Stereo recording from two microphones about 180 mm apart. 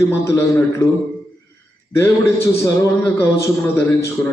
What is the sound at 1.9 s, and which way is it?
A man's voice, 15° left (ahead or behind).